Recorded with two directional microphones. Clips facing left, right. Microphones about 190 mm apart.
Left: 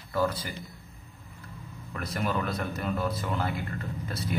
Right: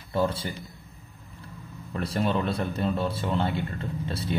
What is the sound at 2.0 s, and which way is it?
A man's voice, 30° right (ahead or behind).